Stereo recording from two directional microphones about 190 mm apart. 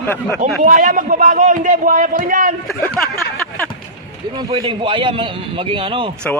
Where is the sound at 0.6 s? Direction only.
45° right (ahead or behind).